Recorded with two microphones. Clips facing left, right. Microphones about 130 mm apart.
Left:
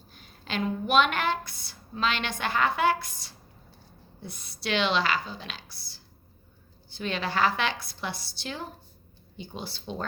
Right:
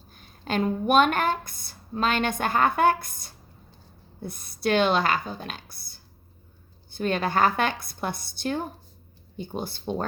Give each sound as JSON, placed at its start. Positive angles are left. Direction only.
{"t": 0.1, "sound": "a woman's voice", "side_deg": -45}